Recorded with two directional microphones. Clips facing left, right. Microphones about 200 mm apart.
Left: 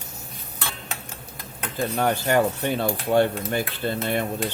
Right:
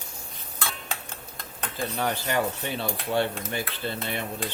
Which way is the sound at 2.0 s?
50° left (ahead or behind).